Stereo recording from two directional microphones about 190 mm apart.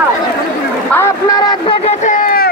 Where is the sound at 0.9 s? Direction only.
15° left (ahead or behind).